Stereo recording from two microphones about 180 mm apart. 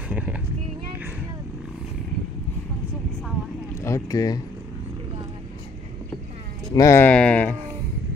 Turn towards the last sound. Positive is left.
turn(degrees=10)  # may be behind; listen again after turning